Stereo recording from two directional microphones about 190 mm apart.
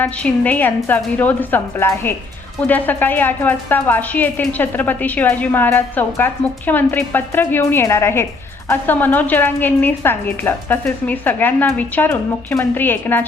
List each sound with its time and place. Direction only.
0.0 s a woman's voice: 10° left (ahead or behind)